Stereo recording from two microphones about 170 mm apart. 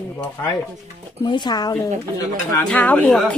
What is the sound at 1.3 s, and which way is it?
Speech, 25° left (ahead or behind).